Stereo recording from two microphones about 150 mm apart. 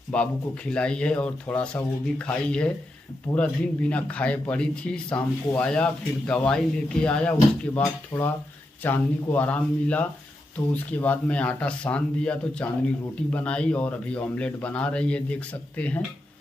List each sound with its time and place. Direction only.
0.1 s speech: 10° left (ahead or behind)
7.8 s speech: 20° left (ahead or behind)